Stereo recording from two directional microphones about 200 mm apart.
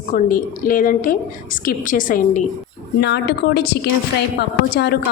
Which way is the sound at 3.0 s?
55° left (ahead or behind).